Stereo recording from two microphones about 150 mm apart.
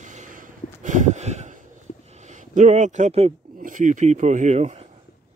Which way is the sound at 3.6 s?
60° right (ahead or behind).